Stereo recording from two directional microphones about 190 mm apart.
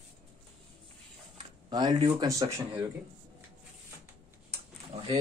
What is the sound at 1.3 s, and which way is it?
Speech, 25° right (ahead or behind).